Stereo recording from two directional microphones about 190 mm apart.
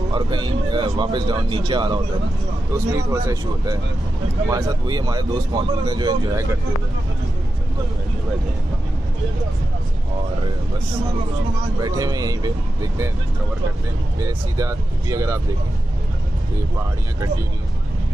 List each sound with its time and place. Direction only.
0.1 s speech: 25° right (ahead or behind)
11.8 s speech: 20° right (ahead or behind)
14.2 s speech: 15° right (ahead or behind)